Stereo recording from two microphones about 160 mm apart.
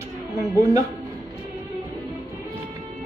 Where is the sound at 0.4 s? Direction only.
20° right (ahead or behind).